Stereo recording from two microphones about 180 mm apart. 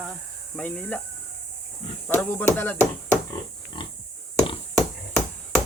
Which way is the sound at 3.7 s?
25° left (ahead or behind).